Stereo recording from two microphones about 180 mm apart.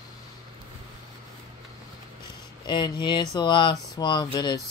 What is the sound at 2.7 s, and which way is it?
Speech, 25° left (ahead or behind).